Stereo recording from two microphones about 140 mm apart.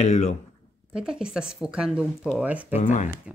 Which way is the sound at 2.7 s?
60° left (ahead or behind).